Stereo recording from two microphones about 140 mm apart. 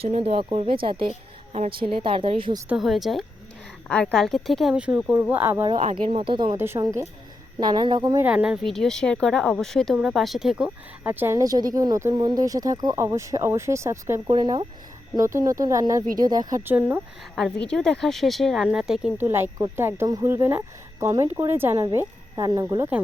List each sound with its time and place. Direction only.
0.0 s a woman's voice: 45° right (ahead or behind)
2.6 s speech: 5° right (ahead or behind)
4.7 s speech: 10° right (ahead or behind)
5.8 s a woman's voice: 40° right (ahead or behind)
6.6 s speech: 20° right (ahead or behind)
8.2 s speech: 10° right (ahead or behind)
8.7 s speech: 5° left (ahead or behind); by 14.3 s 20° right (ahead or behind)
14.3 s a woman's voice: 30° right (ahead or behind)
15.1 s speech: 20° right (ahead or behind)
16.6 s speech: 15° right (ahead or behind)
17.3 s speech: 5° left (ahead or behind)
19.2 s speech: 20° right (ahead or behind)